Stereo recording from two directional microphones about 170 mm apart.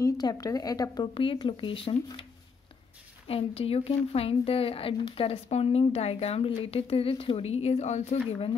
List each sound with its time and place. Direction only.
0.0 s speech: 20° left (ahead or behind)
3.3 s a woman's voice: 35° left (ahead or behind)